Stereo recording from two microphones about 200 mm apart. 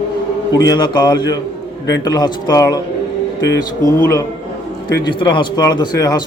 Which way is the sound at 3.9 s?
15° left (ahead or behind).